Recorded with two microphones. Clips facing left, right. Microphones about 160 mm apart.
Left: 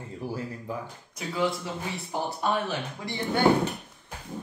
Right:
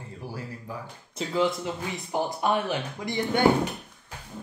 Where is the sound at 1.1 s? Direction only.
20° right (ahead or behind).